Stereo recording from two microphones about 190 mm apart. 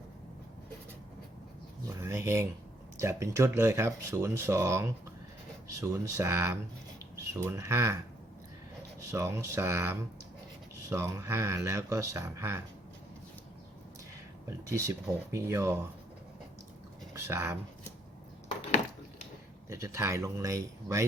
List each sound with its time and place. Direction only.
2.0 s speech: 15° right (ahead or behind)
9.0 s speech: 15° right (ahead or behind)
14.4 s speech: 15° right (ahead or behind)
17.2 s speech: 15° right (ahead or behind)
19.7 s speech: 15° right (ahead or behind)